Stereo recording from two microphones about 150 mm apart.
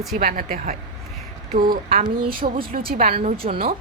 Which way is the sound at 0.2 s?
70° right (ahead or behind).